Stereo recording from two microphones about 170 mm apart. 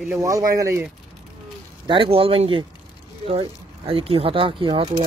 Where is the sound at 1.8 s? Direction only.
30° right (ahead or behind).